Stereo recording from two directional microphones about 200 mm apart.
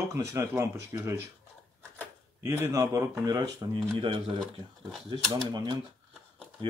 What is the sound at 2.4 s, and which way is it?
Speech, 15° right (ahead or behind).